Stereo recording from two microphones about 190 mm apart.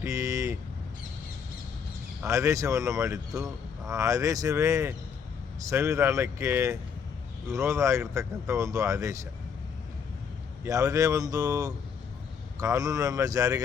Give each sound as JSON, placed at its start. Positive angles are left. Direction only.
{"t": 0.0, "sound": "vehicle", "side_deg": -15}
{"t": 2.2, "sound": "speech", "side_deg": -15}
{"t": 10.6, "sound": "speech", "side_deg": -15}